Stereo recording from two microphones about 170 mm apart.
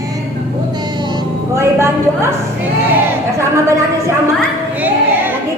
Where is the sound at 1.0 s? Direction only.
25° right (ahead or behind).